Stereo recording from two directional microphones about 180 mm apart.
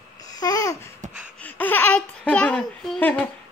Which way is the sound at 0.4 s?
20° left (ahead or behind).